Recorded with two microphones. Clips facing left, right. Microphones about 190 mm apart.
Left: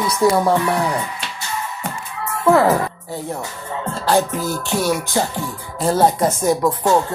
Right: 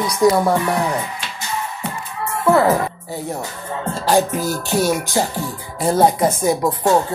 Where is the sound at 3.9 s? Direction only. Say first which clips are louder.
Right 1 dB; 15° right (ahead or behind).